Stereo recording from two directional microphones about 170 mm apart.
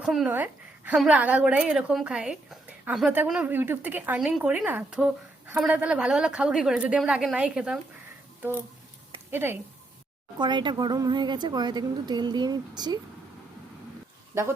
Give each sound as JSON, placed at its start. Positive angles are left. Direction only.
{"t": 0.0, "sound": "a woman's voice", "side_deg": 0}
{"t": 9.3, "sound": "a woman's voice", "side_deg": -15}
{"t": 10.3, "sound": "speech", "side_deg": -25}